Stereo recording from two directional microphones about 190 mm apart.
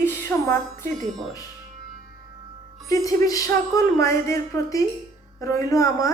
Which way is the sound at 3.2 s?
20° left (ahead or behind).